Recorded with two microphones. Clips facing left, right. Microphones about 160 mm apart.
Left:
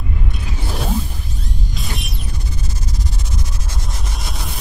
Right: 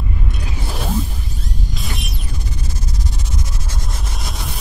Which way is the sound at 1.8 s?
Centre (ahead or behind).